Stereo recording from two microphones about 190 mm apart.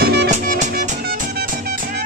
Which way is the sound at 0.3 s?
40° right (ahead or behind).